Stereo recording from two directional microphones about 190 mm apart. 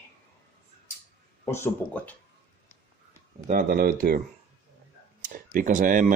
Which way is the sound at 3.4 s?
50° right (ahead or behind).